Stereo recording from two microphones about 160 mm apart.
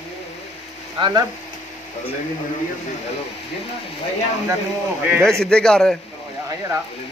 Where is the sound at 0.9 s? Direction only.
30° right (ahead or behind).